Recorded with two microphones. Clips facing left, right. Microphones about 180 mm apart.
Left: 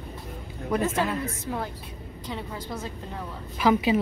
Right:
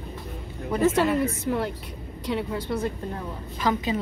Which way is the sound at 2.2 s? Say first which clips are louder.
Right 7 dB; 70° right (ahead or behind).